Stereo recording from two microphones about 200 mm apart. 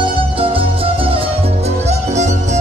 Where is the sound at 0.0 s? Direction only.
25° right (ahead or behind).